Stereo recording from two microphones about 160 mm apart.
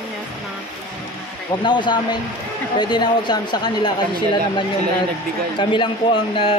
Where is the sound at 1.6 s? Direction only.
30° left (ahead or behind).